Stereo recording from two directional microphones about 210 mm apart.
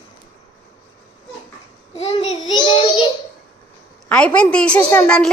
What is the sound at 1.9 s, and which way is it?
Child singing, 30° left (ahead or behind).